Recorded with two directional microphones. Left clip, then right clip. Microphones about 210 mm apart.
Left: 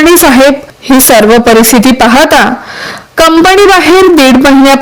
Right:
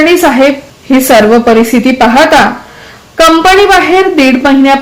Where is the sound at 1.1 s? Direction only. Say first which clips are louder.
Left 1 dB; 50° left (ahead or behind).